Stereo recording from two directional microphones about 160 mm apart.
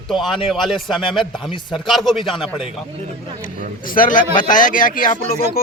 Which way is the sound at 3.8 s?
60° left (ahead or behind).